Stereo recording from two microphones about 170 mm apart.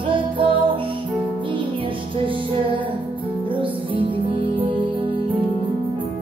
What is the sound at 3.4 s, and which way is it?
Music, 30° right (ahead or behind).